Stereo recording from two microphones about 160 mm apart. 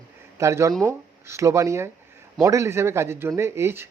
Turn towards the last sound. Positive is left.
turn(degrees=-15)  # may be behind; listen again after turning